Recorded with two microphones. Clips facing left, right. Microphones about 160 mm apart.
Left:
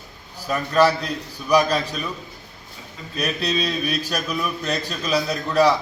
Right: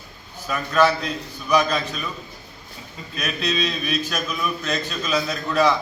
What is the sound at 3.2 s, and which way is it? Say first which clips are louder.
A man's voice: left 1 dB; 35° left (ahead or behind).